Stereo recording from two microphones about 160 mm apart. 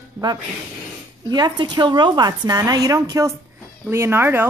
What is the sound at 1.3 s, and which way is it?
Speech, 25° right (ahead or behind).